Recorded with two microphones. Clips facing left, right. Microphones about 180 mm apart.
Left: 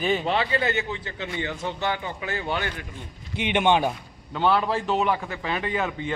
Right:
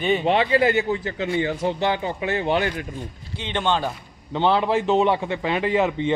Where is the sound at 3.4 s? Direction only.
15° left (ahead or behind).